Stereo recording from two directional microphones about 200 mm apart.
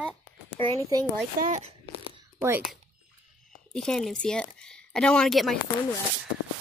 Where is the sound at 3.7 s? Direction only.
5° left (ahead or behind).